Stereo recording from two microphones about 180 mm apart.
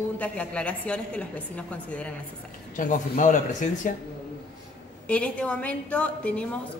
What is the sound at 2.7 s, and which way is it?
Speech, 45° left (ahead or behind).